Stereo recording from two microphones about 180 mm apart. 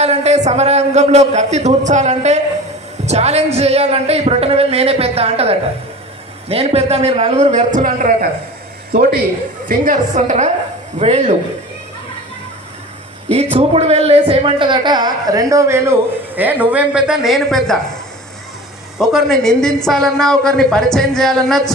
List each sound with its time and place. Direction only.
0.0 s a man's voice: 40° right (ahead or behind)
9.7 s a woman's voice: 45° right (ahead or behind)
13.3 s a woman's voice: 35° right (ahead or behind); by 17.7 s centre (ahead or behind)
18.9 s speech: centre (ahead or behind)